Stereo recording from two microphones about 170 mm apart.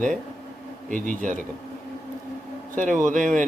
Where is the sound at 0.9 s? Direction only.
50° right (ahead or behind).